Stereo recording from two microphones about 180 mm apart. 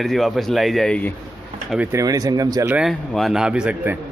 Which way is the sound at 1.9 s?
20° right (ahead or behind).